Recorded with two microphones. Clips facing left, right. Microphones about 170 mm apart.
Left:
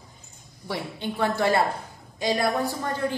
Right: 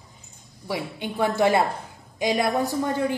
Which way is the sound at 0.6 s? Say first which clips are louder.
Right 1 dB; 10° right (ahead or behind).